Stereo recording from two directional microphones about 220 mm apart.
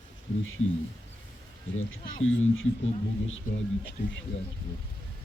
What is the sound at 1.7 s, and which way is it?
Speech, 65° left (ahead or behind).